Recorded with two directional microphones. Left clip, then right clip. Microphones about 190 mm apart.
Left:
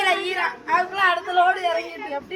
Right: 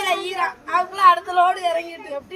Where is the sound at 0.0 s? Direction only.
30° right (ahead or behind).